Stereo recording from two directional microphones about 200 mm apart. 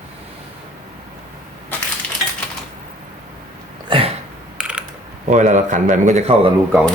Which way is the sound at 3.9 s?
25° right (ahead or behind).